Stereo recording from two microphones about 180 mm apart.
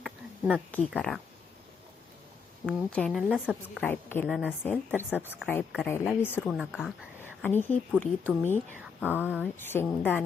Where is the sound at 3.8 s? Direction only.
10° left (ahead or behind).